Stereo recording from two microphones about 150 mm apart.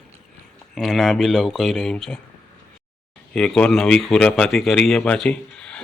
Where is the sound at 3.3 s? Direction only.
5° left (ahead or behind).